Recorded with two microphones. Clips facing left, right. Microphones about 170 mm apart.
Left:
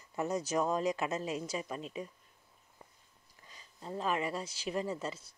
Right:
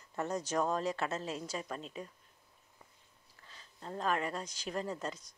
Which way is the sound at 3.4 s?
10° left (ahead or behind).